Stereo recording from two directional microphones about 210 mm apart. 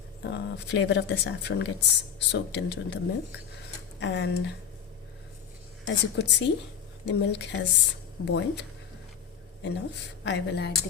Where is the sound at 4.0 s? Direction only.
55° left (ahead or behind).